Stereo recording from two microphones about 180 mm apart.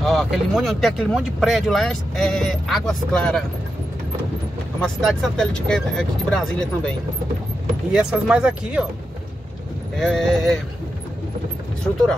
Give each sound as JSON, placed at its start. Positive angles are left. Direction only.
{"t": 0.0, "sound": "speech", "side_deg": 0}
{"t": 4.8, "sound": "speech", "side_deg": 5}
{"t": 9.9, "sound": "speech", "side_deg": 0}